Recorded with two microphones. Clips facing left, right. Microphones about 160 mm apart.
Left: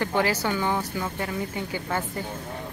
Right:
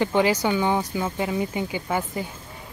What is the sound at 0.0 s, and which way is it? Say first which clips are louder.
Speech: right 4 dB; 20° right (ahead or behind).